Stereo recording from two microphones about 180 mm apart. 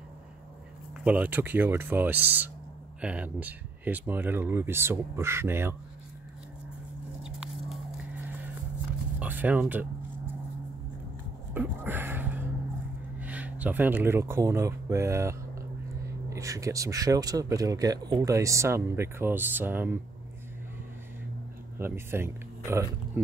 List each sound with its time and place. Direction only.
1.0 s a man's voice: 10° right (ahead or behind)
7.2 s biting: 5° right (ahead or behind)
9.2 s speech: 10° right (ahead or behind)
11.5 s a sound: 10° right (ahead or behind)
13.2 s a man's voice: 10° right (ahead or behind)
21.7 s speech: 15° right (ahead or behind)